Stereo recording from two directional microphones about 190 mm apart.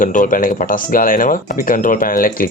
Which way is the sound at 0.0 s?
45° left (ahead or behind).